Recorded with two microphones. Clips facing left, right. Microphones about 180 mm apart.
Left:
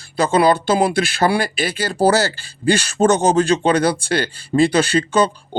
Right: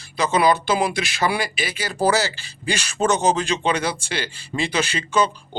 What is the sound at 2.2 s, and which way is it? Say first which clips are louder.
Speech: left 8 dB; 55° left (ahead or behind).